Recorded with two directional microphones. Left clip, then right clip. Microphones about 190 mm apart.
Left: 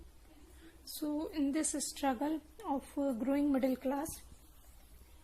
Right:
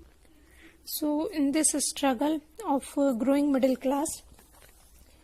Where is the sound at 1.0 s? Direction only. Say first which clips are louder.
Right 9 dB; 30° right (ahead or behind).